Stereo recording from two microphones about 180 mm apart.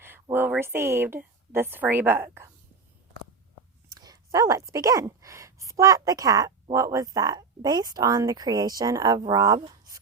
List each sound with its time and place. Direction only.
0.0 s speech: 10° right (ahead or behind)
3.9 s a sound: 20° right (ahead or behind)
4.7 s a woman's voice: 20° right (ahead or behind)